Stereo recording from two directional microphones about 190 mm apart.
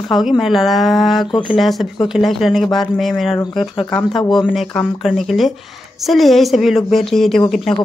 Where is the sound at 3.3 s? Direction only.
25° left (ahead or behind).